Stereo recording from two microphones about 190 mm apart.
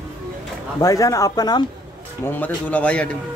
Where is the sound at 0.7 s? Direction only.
20° left (ahead or behind).